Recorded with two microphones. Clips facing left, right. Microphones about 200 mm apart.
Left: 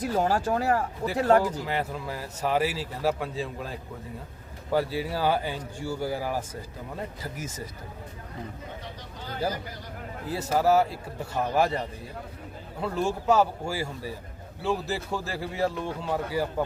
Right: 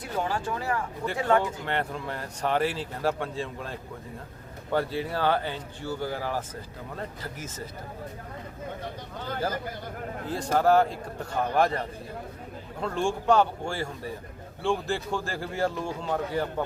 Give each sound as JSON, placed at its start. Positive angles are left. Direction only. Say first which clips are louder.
{"t": 0.0, "sound": "speech", "louder": "left 5 dB", "side_deg": 40}
{"t": 1.6, "sound": "a man's voice", "louder": "even", "side_deg": 5}
{"t": 10.2, "sound": "speech", "louder": "even", "side_deg": 5}
{"t": 12.8, "sound": "a man's voice", "louder": "even", "side_deg": 5}